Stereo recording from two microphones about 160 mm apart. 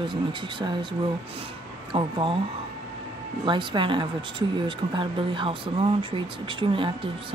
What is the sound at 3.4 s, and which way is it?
Speech, 30° right (ahead or behind).